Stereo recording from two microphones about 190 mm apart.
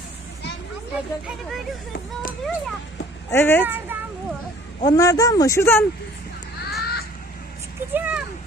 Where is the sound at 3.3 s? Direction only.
10° left (ahead or behind).